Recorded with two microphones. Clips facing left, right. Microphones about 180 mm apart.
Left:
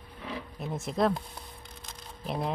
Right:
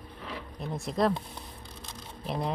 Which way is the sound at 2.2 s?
Centre (ahead or behind).